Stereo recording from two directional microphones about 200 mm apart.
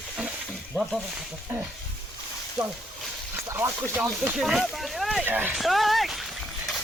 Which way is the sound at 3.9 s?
5° right (ahead or behind).